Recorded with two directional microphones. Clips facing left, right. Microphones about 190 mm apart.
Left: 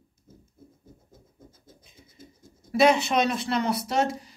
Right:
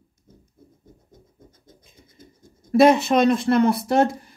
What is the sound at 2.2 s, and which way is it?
Speech, 50° right (ahead or behind).